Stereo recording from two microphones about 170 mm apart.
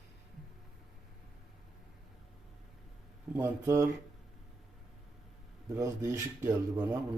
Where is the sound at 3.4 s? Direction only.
15° right (ahead or behind).